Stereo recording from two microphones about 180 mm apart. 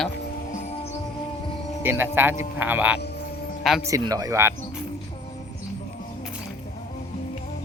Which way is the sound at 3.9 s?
20° right (ahead or behind).